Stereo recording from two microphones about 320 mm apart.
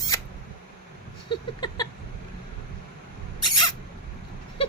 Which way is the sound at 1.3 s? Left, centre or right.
Centre.